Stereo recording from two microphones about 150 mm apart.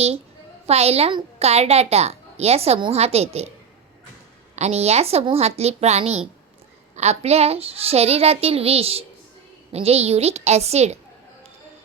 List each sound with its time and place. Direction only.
0.7 s a child's voice: 45° right (ahead or behind)
4.5 s a child's voice: 45° right (ahead or behind)